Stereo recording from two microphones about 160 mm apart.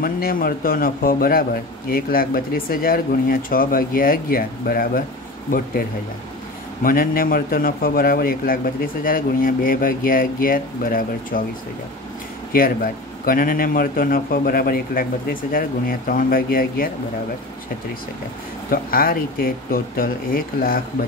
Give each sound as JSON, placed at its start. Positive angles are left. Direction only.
{"t": 0.0, "sound": "a man's voice", "side_deg": 65}
{"t": 6.8, "sound": "a man's voice", "side_deg": 60}
{"t": 12.5, "sound": "a man's voice", "side_deg": 65}
{"t": 18.7, "sound": "a man's voice", "side_deg": 65}